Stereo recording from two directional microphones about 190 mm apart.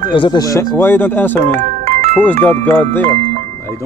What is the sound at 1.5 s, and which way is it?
Music, 35° right (ahead or behind).